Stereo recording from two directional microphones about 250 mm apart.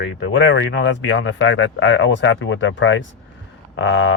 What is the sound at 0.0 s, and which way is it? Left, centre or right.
Speech, left.